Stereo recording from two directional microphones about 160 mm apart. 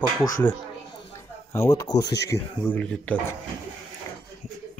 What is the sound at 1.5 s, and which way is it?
Speech, 20° left (ahead or behind).